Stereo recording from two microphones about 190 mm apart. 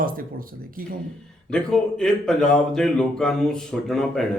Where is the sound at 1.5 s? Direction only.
5° left (ahead or behind).